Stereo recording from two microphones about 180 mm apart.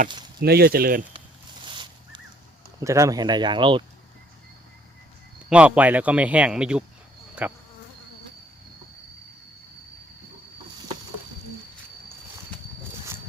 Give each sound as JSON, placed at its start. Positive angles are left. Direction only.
{"t": 0.3, "sound": "speech", "side_deg": -60}
{"t": 1.6, "sound": "a sound", "side_deg": -25}
{"t": 2.8, "sound": "speech", "side_deg": -15}
{"t": 5.5, "sound": "speech", "side_deg": -5}